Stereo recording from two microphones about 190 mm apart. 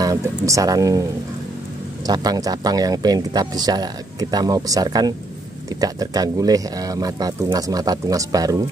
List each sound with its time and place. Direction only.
0.0 s speech: 15° right (ahead or behind)
2.0 s speech: 20° right (ahead or behind)